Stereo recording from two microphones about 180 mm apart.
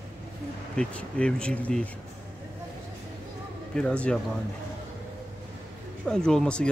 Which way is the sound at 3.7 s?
5° left (ahead or behind).